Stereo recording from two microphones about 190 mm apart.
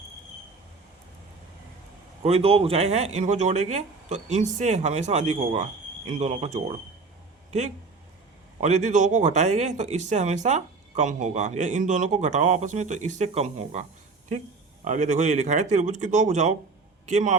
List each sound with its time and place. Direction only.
2.2 s speech: 30° right (ahead or behind)
8.6 s speech: 40° right (ahead or behind)
14.8 s speech: 40° right (ahead or behind)